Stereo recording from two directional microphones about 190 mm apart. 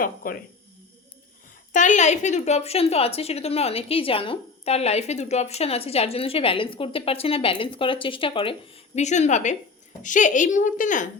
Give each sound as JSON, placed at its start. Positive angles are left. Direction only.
{"t": 0.0, "sound": "speech", "side_deg": 50}
{"t": 1.7, "sound": "a woman's voice", "side_deg": 40}